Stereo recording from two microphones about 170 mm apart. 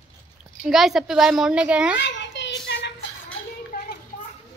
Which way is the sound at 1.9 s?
90° left.